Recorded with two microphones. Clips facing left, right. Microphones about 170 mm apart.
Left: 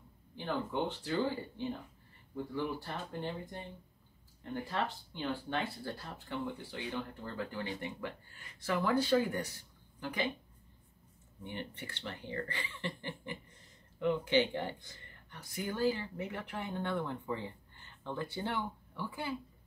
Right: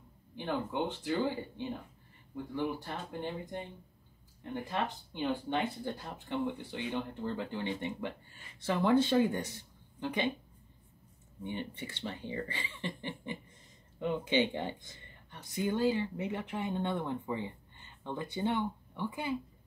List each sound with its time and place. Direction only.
0.4 s speech: 20° right (ahead or behind)
11.4 s speech: 20° right (ahead or behind)